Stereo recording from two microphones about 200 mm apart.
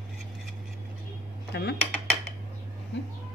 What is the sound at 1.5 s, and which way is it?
Cutlery, 55° left (ahead or behind).